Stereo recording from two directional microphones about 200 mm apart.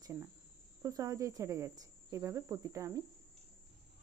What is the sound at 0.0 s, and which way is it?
Speech, 15° right (ahead or behind).